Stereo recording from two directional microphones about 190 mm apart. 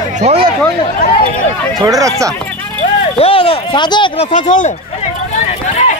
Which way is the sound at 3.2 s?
30° left (ahead or behind).